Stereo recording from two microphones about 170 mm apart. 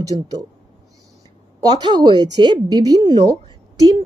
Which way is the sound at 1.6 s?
25° right (ahead or behind).